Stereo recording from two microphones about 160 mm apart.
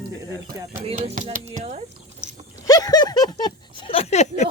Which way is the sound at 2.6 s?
25° left (ahead or behind).